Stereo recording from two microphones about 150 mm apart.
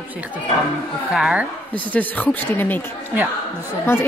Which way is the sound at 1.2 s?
5° right (ahead or behind).